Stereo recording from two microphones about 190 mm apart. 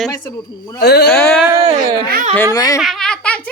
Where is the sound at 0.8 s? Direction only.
60° left (ahead or behind).